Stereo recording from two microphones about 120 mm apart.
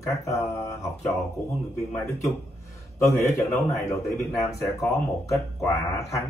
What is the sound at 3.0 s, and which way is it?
Speech, 25° left (ahead or behind).